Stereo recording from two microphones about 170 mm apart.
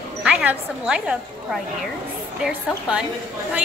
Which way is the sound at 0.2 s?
5° right (ahead or behind).